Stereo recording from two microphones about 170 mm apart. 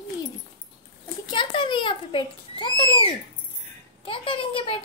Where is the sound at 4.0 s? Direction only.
30° left (ahead or behind).